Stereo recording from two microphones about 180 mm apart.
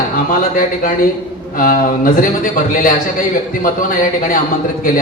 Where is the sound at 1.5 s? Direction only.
50° left (ahead or behind).